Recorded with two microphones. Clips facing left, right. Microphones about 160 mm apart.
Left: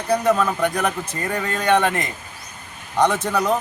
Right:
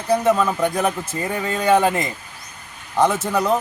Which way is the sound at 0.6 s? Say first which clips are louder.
Right 1 dB; 25° right (ahead or behind).